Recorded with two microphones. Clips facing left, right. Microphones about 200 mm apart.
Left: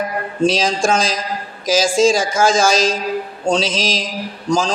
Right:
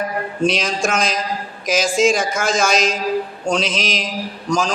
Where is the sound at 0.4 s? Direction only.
30° left (ahead or behind).